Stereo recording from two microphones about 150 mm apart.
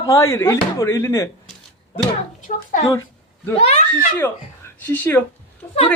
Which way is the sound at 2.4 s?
60° left (ahead or behind).